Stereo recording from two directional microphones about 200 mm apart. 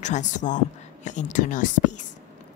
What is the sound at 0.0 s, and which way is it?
A woman's voice, 35° left (ahead or behind).